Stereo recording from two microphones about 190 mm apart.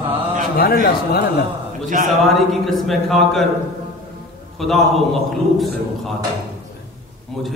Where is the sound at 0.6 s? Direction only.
55° left (ahead or behind).